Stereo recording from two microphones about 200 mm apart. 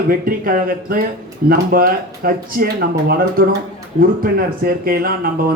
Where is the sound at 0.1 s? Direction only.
45° right (ahead or behind).